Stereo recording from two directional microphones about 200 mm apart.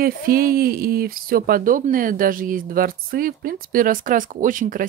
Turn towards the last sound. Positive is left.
turn(degrees=-40)  # may be behind; listen again after turning